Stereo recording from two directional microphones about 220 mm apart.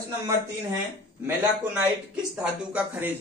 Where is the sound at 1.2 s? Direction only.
10° right (ahead or behind).